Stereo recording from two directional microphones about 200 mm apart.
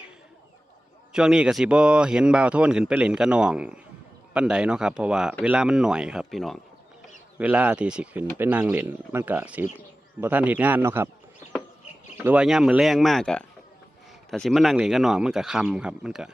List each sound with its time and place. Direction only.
1.1 s speech: 5° right (ahead or behind)
12.1 s speech: 10° right (ahead or behind)